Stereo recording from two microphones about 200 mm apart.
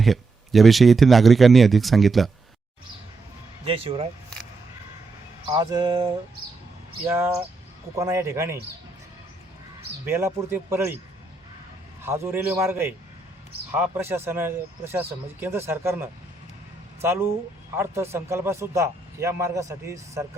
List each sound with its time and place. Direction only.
0.0 s speech: centre (ahead or behind)
3.7 s speech: 25° right (ahead or behind)
5.5 s speech: 20° right (ahead or behind)
7.1 s a man's voice: 10° right (ahead or behind)
10.1 s a man's voice: 10° right (ahead or behind)
12.0 s a man's voice: 10° right (ahead or behind)